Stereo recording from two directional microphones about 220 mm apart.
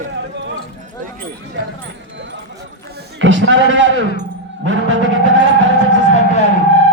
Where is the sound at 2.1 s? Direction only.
55° right (ahead or behind).